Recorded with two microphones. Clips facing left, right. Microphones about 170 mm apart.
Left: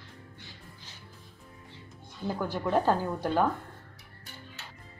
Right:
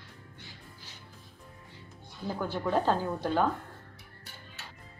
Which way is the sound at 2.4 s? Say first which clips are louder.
Left 1 dB; 15° left (ahead or behind).